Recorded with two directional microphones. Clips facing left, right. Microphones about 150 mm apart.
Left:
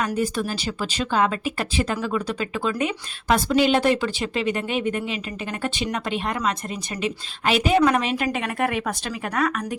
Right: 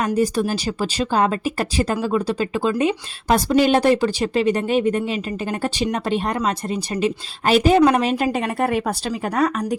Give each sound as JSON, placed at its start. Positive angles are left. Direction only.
{"t": 0.0, "sound": "speech", "side_deg": -40}